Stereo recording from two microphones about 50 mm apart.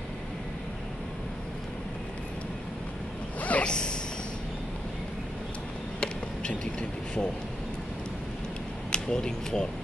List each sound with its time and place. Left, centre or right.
3.3 s zipper: left
5.9 s a sound: centre
8.9 s speech: centre